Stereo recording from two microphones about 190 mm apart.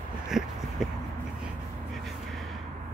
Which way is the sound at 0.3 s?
Centre (ahead or behind).